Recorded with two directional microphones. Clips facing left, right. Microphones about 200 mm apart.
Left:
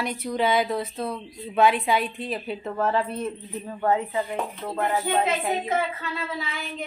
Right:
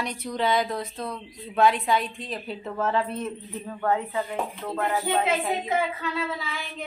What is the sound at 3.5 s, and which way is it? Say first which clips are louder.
Speech: left 2 dB; 15° left (ahead or behind).